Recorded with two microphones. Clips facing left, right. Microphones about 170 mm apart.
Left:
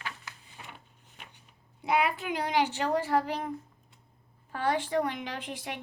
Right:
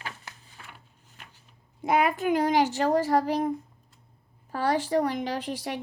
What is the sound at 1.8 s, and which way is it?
Speech, 45° right (ahead or behind).